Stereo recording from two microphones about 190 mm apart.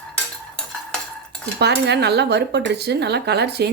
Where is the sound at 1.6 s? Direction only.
60° right (ahead or behind).